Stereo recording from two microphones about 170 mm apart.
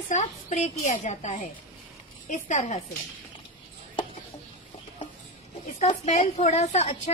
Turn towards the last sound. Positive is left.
turn(degrees=40)  # may be behind; listen again after turning